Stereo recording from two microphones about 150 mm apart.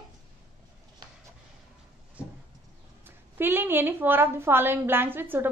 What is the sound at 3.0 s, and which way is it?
A woman's voice, 15° right (ahead or behind).